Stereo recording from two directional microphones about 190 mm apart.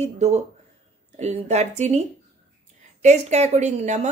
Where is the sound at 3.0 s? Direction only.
35° right (ahead or behind).